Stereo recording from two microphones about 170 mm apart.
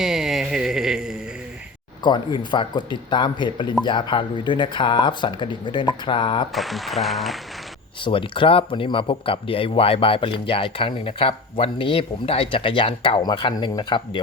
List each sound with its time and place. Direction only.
0.0 s a sound: 5° right (ahead or behind)
2.0 s speech: 25° left (ahead or behind)
6.5 s speech: centre (ahead or behind)
8.0 s speech: 30° left (ahead or behind)